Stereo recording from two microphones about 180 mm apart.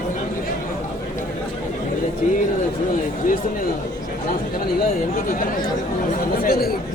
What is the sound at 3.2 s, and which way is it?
Speech, 50° left (ahead or behind).